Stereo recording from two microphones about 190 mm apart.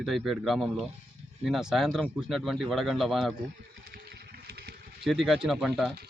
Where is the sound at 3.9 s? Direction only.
55° right (ahead or behind).